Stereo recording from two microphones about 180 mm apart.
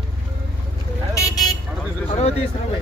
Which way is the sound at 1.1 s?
20° left (ahead or behind).